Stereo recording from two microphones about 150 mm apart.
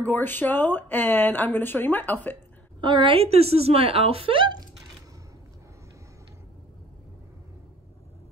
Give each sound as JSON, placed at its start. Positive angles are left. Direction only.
{"t": 0.0, "sound": "speech", "side_deg": 10}
{"t": 2.8, "sound": "a woman's voice", "side_deg": -35}